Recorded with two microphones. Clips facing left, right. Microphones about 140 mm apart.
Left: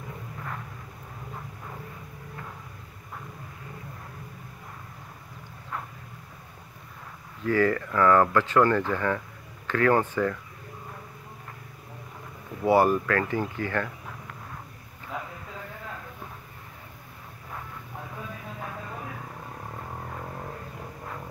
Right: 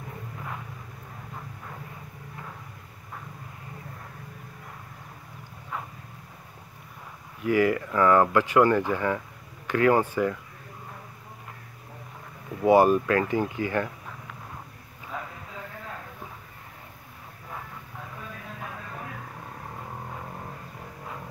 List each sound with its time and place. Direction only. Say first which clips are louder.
7.4 s speech: right 1 dB; 15° right (ahead or behind)
12.6 s speech: right 2 dB; 20° right (ahead or behind)